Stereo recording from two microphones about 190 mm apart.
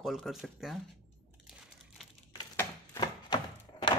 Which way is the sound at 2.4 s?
20° left (ahead or behind).